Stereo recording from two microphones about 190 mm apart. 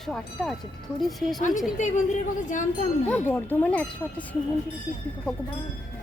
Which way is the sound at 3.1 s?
10° left (ahead or behind).